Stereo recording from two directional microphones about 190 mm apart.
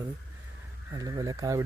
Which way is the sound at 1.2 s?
15° right (ahead or behind).